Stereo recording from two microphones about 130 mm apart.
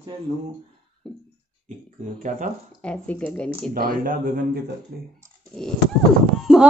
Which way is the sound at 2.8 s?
10° left (ahead or behind).